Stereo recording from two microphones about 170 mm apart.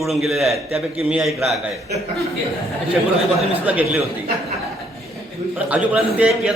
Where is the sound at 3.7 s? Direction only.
10° right (ahead or behind).